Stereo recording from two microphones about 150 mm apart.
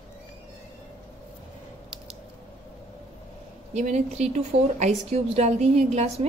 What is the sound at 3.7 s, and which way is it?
A woman's voice, 50° right (ahead or behind).